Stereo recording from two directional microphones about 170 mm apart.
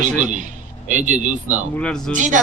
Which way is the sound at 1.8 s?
5° left (ahead or behind).